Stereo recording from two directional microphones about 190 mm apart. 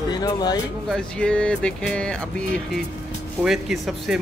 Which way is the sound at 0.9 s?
5° left (ahead or behind).